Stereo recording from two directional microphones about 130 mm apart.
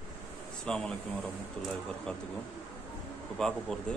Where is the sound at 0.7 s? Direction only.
10° left (ahead or behind).